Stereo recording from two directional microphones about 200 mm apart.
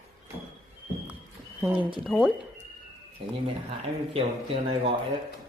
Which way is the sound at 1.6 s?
10° right (ahead or behind).